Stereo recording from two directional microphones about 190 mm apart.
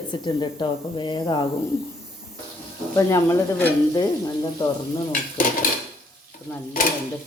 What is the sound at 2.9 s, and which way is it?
Stir, 15° left (ahead or behind).